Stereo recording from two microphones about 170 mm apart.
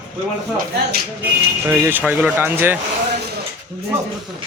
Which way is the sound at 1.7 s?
10° right (ahead or behind).